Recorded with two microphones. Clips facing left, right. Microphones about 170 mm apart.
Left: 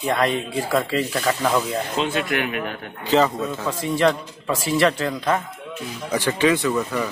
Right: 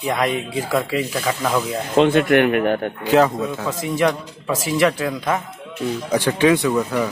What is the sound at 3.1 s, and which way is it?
Speech, 10° right (ahead or behind).